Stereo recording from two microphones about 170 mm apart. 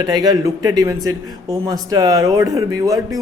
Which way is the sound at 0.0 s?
25° right (ahead or behind).